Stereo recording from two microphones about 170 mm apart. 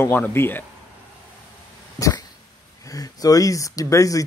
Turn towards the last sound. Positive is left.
turn(degrees=20)  # may be behind; listen again after turning